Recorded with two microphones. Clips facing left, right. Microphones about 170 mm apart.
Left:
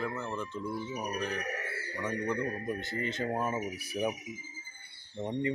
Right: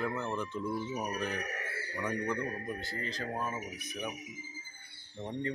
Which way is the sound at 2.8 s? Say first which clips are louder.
Left 5 dB; 20° left (ahead or behind).